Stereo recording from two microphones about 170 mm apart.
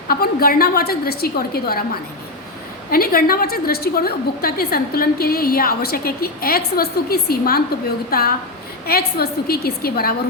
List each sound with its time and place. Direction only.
0.1 s a woman's voice: 60° left (ahead or behind)
2.9 s a woman's voice: 60° left (ahead or behind)
8.9 s a woman's voice: 65° left (ahead or behind)